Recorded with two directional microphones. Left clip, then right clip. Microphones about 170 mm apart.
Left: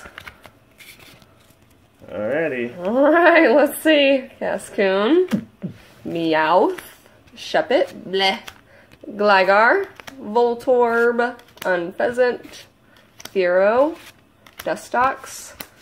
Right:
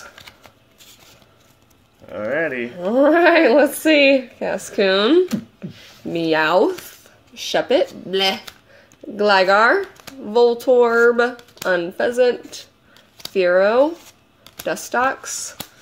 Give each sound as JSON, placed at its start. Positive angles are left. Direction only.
{"t": 2.0, "sound": "a sound", "side_deg": 15}
{"t": 2.8, "sound": "a woman's voice", "side_deg": -30}
{"t": 4.7, "sound": "a woman's voice", "side_deg": -40}
{"t": 9.1, "sound": "speech", "side_deg": -30}
{"t": 14.4, "sound": "speech", "side_deg": -45}